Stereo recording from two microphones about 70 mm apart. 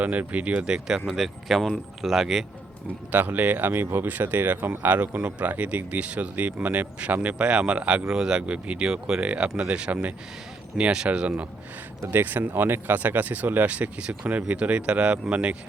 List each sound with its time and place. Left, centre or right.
0.0 s speech: right
0.9 s speech: centre
3.1 s speech: right
12.1 s speech: right